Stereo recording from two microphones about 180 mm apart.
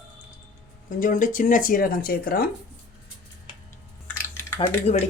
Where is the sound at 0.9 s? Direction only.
50° left (ahead or behind).